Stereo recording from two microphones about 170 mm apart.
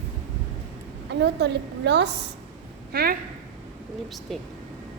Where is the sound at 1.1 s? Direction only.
80° right.